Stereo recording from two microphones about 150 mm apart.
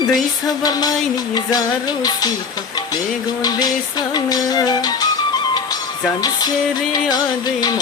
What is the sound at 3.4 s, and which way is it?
Music, 25° left (ahead or behind).